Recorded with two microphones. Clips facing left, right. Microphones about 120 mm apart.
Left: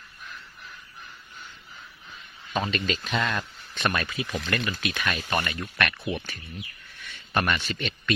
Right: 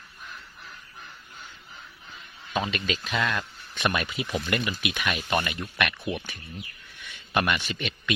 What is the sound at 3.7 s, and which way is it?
Speech, 15° right (ahead or behind).